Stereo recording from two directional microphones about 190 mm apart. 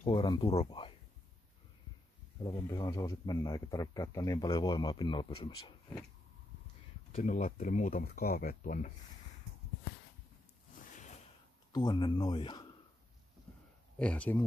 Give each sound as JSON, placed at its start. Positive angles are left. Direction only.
{"t": 0.1, "sound": "a man's voice", "side_deg": 25}
{"t": 2.4, "sound": "a man's voice", "side_deg": 20}
{"t": 7.2, "sound": "speech", "side_deg": 45}
{"t": 11.7, "sound": "a man's voice", "side_deg": 25}
{"t": 13.9, "sound": "speech", "side_deg": 5}